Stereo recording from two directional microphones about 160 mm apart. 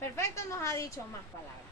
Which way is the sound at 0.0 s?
15° left (ahead or behind).